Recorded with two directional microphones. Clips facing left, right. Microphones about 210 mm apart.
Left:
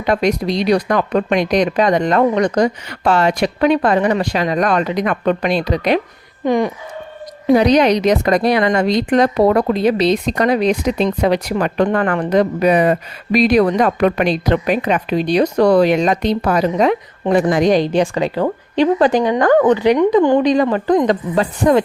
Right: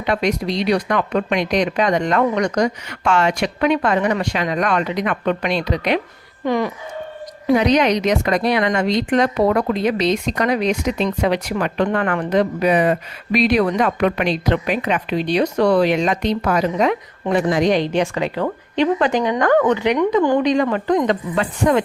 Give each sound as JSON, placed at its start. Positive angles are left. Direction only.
{"t": 0.0, "sound": "a woman's voice", "side_deg": 40}
{"t": 6.4, "sound": "speech", "side_deg": 20}
{"t": 7.5, "sound": "a woman's voice", "side_deg": 35}